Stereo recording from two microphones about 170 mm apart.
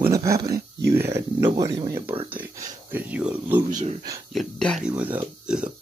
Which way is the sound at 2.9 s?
10° right (ahead or behind).